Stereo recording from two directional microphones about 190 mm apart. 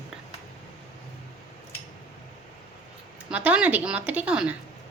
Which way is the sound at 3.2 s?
5° right (ahead or behind).